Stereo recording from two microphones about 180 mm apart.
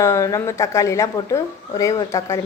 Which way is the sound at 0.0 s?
15° left (ahead or behind).